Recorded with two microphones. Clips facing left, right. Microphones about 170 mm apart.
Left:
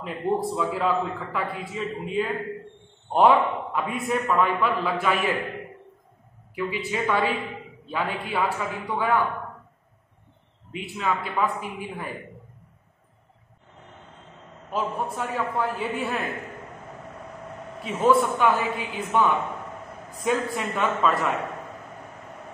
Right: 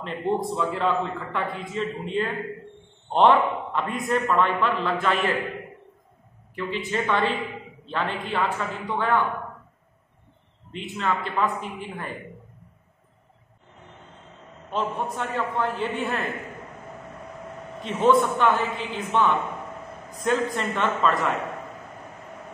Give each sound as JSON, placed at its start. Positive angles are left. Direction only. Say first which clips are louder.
{"t": 0.0, "sound": "a man's voice", "louder": "even", "side_deg": 0}
{"t": 6.5, "sound": "a man's voice", "louder": "even", "side_deg": 10}
{"t": 10.7, "sound": "a man's voice", "louder": "even", "side_deg": 5}
{"t": 14.7, "sound": "a man's voice", "louder": "even", "side_deg": 5}
{"t": 17.8, "sound": "a man's voice", "louder": "right 1 dB", "side_deg": 5}
{"t": 20.2, "sound": "a man's voice", "louder": "right 1 dB", "side_deg": 5}